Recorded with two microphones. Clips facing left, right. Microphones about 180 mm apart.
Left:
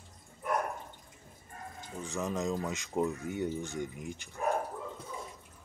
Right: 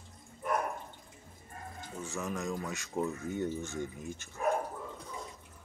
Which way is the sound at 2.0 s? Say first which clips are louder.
Left 3 dB; 20° left (ahead or behind).